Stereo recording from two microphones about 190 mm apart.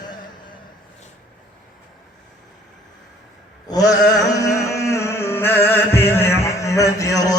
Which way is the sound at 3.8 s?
65° left (ahead or behind).